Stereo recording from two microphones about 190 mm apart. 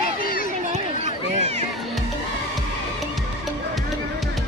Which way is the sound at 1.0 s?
35° right (ahead or behind).